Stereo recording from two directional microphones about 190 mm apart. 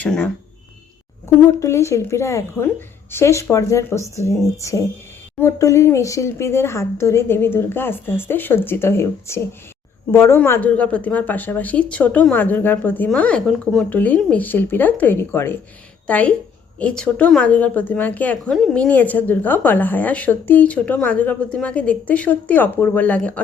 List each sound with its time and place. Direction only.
0.0 s a woman's voice: 5° left (ahead or behind)
1.5 s a woman's voice: 15° left (ahead or behind)